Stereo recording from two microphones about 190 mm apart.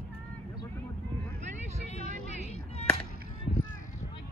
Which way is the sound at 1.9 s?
35° left (ahead or behind).